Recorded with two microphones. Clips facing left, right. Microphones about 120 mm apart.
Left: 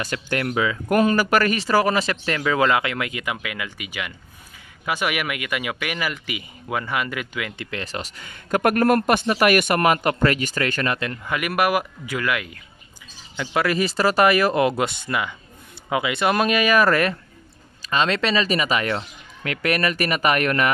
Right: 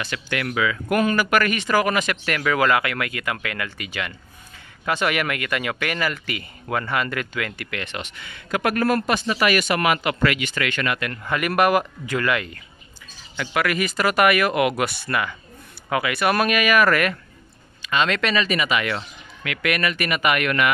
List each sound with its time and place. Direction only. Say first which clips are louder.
0.0 s speech: left 2 dB; 40° left (ahead or behind); by 7.8 s 20° left (ahead or behind)
7.8 s speech: left 1 dB; 35° left (ahead or behind)
11.2 s speech: right 2 dB; 10° left (ahead or behind)
13.4 s speech: left 1 dB; 25° left (ahead or behind)